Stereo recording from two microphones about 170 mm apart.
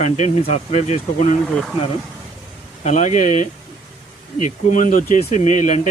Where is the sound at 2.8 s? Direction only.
40° left (ahead or behind).